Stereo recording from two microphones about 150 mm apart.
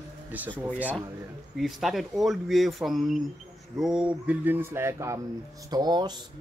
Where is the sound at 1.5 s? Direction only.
Centre (ahead or behind).